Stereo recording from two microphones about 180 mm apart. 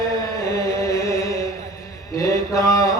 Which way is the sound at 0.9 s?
15° left (ahead or behind).